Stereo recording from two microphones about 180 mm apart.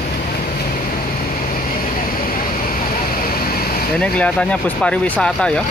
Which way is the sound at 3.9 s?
5° left (ahead or behind).